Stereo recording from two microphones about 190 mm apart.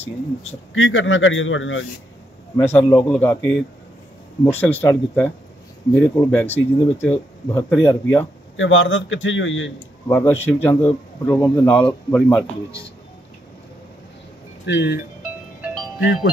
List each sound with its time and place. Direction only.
0.7 s a man's voice: 90° left
2.5 s a man's voice: 10° left (ahead or behind)
3.1 s a man's voice: 10° left (ahead or behind)
4.5 s a man's voice: 10° left (ahead or behind)
8.5 s a man's voice: 85° left
10.0 s a man's voice: 15° left (ahead or behind)
14.7 s speech: 65° left (ahead or behind)
15.6 s music: 10° right (ahead or behind)